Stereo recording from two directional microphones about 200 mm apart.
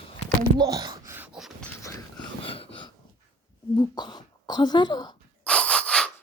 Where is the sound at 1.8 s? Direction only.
25° left (ahead or behind).